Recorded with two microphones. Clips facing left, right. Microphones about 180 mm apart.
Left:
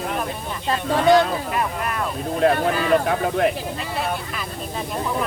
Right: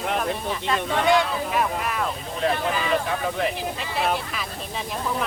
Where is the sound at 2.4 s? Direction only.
50° left (ahead or behind).